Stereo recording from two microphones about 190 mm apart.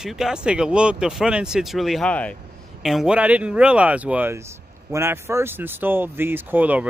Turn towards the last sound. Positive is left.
turn(degrees=-10)  # may be behind; listen again after turning